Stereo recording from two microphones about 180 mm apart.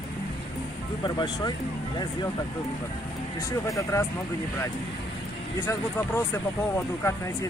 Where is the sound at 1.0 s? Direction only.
25° left (ahead or behind).